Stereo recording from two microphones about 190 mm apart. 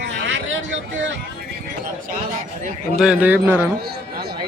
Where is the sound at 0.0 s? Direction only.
75° right (ahead or behind).